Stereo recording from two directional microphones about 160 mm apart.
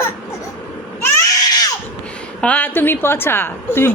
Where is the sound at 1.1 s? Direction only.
20° left (ahead or behind).